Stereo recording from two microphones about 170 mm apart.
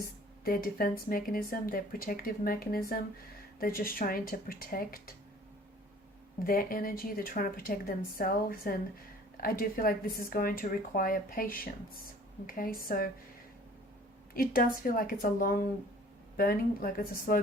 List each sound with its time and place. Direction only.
0.4 s speech: 60° left (ahead or behind)
6.4 s speech: 60° left (ahead or behind)
14.3 s speech: 60° left (ahead or behind)